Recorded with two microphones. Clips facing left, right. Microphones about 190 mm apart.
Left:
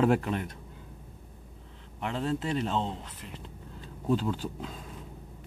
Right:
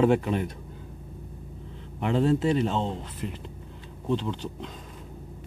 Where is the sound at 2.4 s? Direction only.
Centre (ahead or behind).